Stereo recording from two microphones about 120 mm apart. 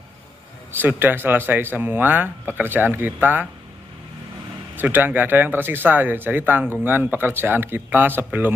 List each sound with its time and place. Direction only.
0.7 s speech: 15° right (ahead or behind)
4.7 s speech: 15° right (ahead or behind)